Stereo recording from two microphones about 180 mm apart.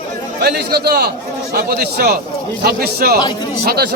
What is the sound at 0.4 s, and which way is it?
A man's voice, 60° right (ahead or behind).